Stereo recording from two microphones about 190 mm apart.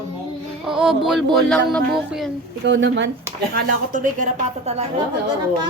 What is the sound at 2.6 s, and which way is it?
Speech, 70° right (ahead or behind).